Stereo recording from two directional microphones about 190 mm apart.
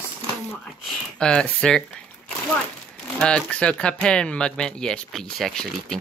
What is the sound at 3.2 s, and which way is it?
Speech, 5° left (ahead or behind).